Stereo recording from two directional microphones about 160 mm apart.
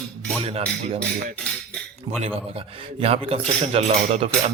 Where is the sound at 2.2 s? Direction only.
35° right (ahead or behind).